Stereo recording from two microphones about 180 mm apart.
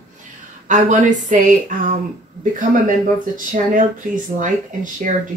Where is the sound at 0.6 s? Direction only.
45° right (ahead or behind).